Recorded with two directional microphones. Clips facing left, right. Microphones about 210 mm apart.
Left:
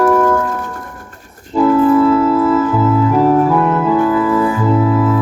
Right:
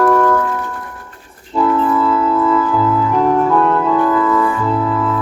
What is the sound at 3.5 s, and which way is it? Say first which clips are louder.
Organ: left 1 dB; 10° left (ahead or behind).